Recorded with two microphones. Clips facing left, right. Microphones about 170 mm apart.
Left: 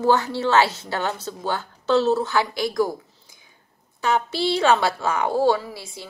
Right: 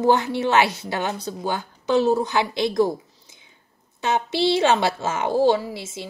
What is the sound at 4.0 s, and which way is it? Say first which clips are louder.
A woman's voice: right 1 dB; 20° right (ahead or behind).